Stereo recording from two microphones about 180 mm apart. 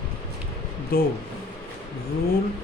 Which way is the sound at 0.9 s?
55° left (ahead or behind).